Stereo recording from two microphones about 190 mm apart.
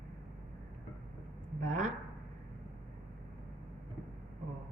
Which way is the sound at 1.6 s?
40° right (ahead or behind).